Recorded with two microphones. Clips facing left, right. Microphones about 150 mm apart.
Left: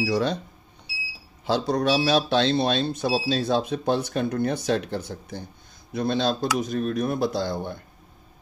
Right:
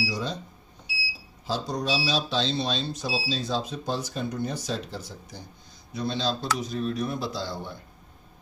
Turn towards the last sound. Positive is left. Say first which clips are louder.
# left 6 dB
turn(degrees=55)  # may be behind; listen again after turning